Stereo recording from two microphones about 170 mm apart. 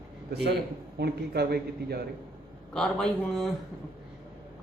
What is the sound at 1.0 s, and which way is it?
A man's voice, 70° right (ahead or behind).